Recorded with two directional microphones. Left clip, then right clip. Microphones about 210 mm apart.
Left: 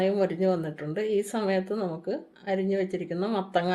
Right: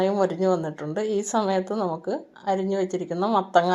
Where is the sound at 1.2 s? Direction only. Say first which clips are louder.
Right 4 dB; 5° right (ahead or behind).